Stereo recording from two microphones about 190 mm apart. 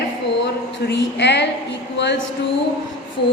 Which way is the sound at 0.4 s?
65° left (ahead or behind).